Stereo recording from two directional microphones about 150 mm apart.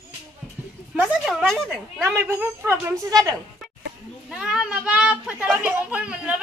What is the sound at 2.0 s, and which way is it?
A child's voice, 15° right (ahead or behind).